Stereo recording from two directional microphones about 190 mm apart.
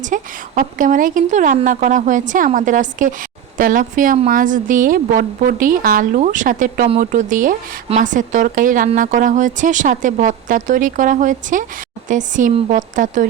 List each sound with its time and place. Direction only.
0.0 s a woman's voice: 40° right (ahead or behind)